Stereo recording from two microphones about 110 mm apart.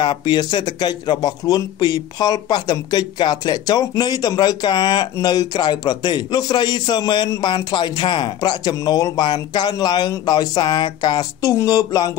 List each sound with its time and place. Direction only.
0.0 s a man's voice: 45° left (ahead or behind)